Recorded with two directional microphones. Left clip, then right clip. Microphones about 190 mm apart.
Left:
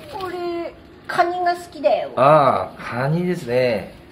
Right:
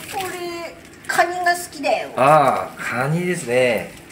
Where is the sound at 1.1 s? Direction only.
40° left (ahead or behind).